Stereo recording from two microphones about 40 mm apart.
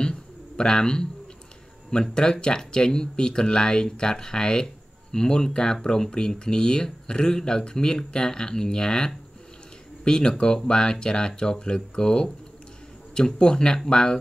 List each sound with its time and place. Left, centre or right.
0.0 s bird: centre
1.9 s speech: centre